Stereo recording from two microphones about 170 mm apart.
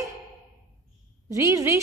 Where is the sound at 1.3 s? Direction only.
20° right (ahead or behind).